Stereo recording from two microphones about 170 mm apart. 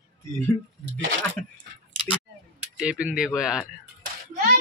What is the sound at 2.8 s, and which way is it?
Speech, 5° right (ahead or behind).